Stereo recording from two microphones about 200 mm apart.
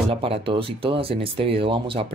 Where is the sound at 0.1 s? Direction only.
25° right (ahead or behind).